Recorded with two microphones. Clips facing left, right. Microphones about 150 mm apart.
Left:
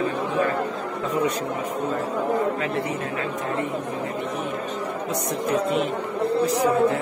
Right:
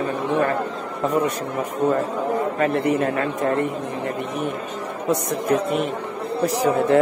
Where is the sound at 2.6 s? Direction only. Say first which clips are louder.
Right 7 dB; 55° right (ahead or behind).